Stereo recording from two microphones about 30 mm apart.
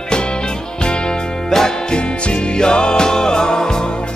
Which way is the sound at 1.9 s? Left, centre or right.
Left.